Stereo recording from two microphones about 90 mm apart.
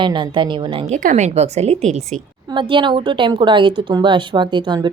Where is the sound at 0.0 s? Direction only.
60° right (ahead or behind).